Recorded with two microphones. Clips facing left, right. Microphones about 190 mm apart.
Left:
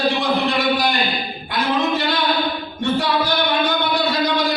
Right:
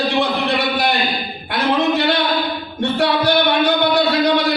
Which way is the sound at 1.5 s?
65° right (ahead or behind).